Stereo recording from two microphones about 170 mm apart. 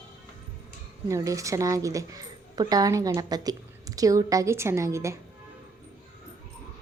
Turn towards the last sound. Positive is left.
turn(degrees=-15)  # may be behind; listen again after turning